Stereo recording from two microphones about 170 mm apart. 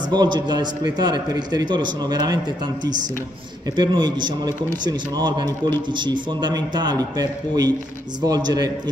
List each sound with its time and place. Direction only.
0.1 s a man's voice: 25° right (ahead or behind)